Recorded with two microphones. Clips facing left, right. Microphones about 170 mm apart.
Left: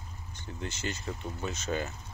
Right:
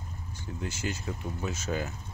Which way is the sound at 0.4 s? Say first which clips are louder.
Right 2 dB; 5° right (ahead or behind).